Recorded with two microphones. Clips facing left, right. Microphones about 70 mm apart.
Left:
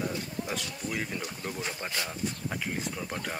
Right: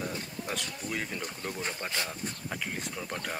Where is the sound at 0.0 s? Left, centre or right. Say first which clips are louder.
Left 3 dB; centre.